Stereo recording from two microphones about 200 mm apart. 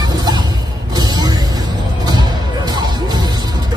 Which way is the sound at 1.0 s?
20° right (ahead or behind).